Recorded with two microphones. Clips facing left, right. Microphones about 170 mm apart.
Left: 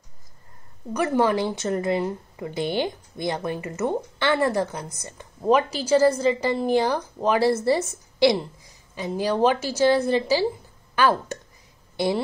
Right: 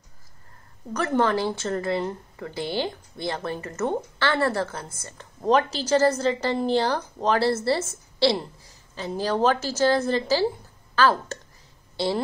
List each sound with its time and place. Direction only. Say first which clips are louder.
0.9 s speech: left 2 dB; 10° left (ahead or behind)